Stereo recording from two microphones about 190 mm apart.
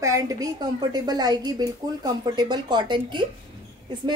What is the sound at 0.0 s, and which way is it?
A woman's voice, 15° right (ahead or behind).